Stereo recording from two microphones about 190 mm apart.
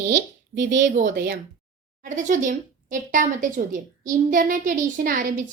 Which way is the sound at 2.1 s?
40° right (ahead or behind).